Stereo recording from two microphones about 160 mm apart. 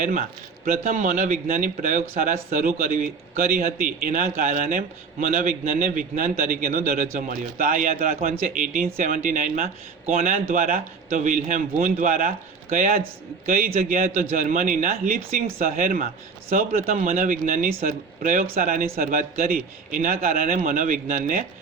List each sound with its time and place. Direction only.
0.0 s a man's voice: 55° right (ahead or behind)